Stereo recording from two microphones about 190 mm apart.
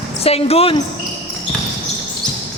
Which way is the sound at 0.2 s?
30° left (ahead or behind).